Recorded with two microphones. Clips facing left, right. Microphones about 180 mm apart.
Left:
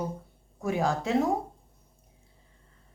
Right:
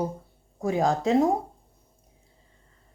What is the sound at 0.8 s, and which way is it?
Speech, 35° right (ahead or behind).